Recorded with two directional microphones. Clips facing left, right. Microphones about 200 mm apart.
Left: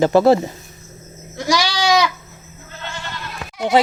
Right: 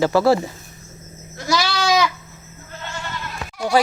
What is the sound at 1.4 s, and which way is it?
Goat, 15° left (ahead or behind).